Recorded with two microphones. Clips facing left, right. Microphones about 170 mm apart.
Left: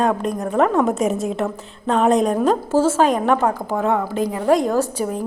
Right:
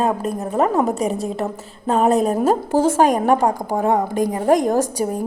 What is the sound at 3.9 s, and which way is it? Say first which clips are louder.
Speech: right 2 dB; 40° right (ahead or behind).